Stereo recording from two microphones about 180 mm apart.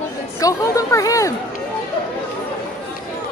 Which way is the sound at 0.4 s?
20° left (ahead or behind).